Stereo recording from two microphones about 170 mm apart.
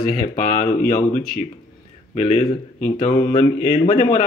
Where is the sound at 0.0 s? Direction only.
50° left (ahead or behind).